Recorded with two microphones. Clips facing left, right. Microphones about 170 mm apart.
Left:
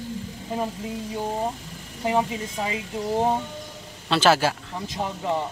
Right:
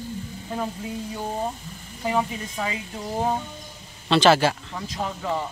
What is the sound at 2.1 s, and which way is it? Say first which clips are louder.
Speech: left 1 dB; 20° left (ahead or behind).